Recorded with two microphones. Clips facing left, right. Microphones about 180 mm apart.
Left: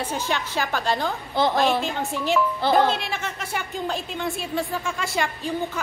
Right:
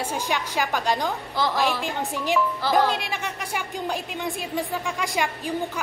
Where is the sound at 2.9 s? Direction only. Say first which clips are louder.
Left 1 dB; 15° right (ahead or behind).